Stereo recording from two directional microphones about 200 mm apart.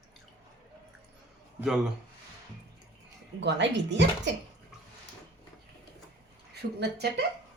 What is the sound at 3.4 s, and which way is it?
Speech, 60° right (ahead or behind).